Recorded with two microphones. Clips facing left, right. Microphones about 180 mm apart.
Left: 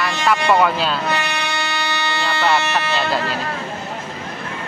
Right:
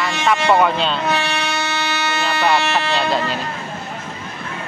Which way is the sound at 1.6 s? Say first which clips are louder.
Right 1 dB; 20° right (ahead or behind).